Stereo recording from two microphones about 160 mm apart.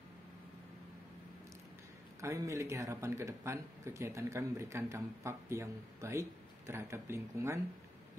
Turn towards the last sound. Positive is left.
turn(degrees=-15)  # may be behind; listen again after turning